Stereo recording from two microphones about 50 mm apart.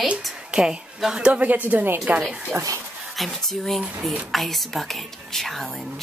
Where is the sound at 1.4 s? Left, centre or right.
Right.